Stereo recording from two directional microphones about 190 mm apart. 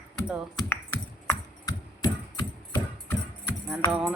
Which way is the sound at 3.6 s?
Centre (ahead or behind).